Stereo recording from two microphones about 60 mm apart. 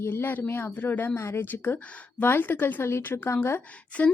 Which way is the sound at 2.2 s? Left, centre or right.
Left.